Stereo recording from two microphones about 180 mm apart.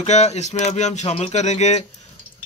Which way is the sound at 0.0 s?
35° left (ahead or behind).